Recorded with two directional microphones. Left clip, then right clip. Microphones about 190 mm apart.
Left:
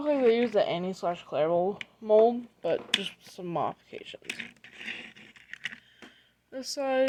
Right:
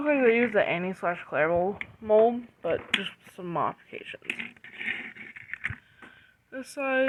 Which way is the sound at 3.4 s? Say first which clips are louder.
Right 2 dB; 5° left (ahead or behind).